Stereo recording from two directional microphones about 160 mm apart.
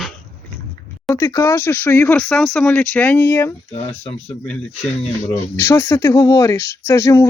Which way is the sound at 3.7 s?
40° left (ahead or behind).